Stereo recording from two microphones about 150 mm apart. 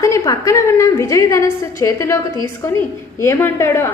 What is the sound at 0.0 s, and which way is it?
A woman's voice, 20° left (ahead or behind).